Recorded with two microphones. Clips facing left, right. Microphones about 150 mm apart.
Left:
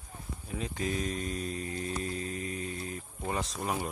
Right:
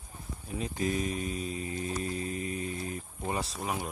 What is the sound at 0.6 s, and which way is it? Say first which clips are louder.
Speech: right 3 dB; 35° right (ahead or behind).